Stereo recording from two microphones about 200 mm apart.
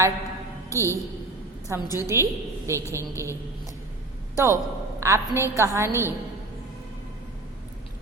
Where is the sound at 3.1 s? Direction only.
15° right (ahead or behind).